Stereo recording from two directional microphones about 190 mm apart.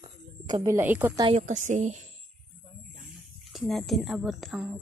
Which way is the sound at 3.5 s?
Centre (ahead or behind).